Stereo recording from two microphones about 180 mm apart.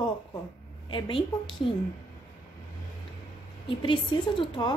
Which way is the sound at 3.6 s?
25° left (ahead or behind).